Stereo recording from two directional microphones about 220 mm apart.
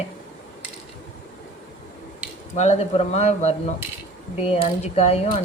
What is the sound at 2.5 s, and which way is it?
A woman's voice, 30° left (ahead or behind).